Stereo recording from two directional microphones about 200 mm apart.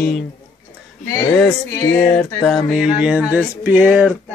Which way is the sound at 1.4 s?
10° left (ahead or behind).